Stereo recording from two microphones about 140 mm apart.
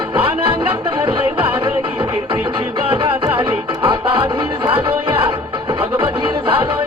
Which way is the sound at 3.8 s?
40° right (ahead or behind).